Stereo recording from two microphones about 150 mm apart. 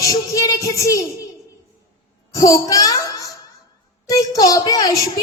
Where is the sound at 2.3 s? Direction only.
20° left (ahead or behind).